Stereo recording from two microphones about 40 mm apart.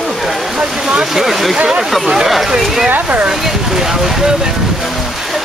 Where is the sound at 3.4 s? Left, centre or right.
Centre.